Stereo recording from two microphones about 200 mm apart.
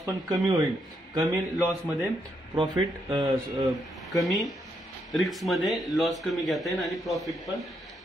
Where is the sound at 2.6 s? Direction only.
25° right (ahead or behind).